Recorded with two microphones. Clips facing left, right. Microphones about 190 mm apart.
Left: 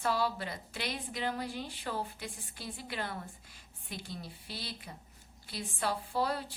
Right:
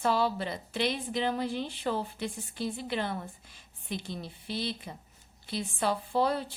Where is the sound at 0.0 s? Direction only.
25° right (ahead or behind).